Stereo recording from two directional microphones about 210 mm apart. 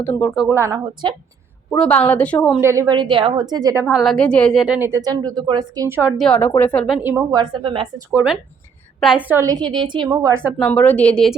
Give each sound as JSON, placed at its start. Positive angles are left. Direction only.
{"t": 0.0, "sound": "a woman's voice", "side_deg": 10}
{"t": 0.3, "sound": "a woman's voice", "side_deg": -10}
{"t": 1.7, "sound": "a woman's voice", "side_deg": 5}
{"t": 2.6, "sound": "a woman's voice", "side_deg": -15}
{"t": 3.9, "sound": "a woman's voice", "side_deg": 0}
{"t": 8.1, "sound": "a woman's voice", "side_deg": -5}
{"t": 10.6, "sound": "a woman's voice", "side_deg": 5}